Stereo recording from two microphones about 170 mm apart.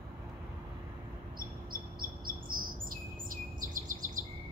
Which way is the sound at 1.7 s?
55° right (ahead or behind).